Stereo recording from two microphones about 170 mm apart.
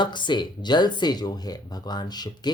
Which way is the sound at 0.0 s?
25° left (ahead or behind).